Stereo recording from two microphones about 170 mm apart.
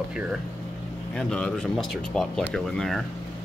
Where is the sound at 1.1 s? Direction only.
5° left (ahead or behind).